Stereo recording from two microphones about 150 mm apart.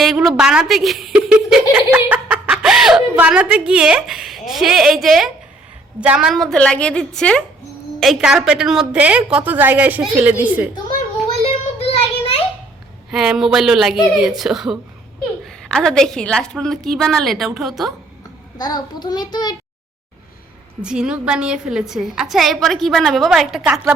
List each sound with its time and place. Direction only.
0.0 s a woman's voice: centre (ahead or behind)
11.3 s child singing: 40° left (ahead or behind)
13.1 s a woman's voice: 5° right (ahead or behind)
18.5 s a child's voice: 25° left (ahead or behind)
20.8 s a woman's voice: 5° right (ahead or behind)